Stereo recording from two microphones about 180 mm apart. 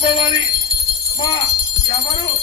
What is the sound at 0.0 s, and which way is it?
Jingle bell, 25° left (ahead or behind).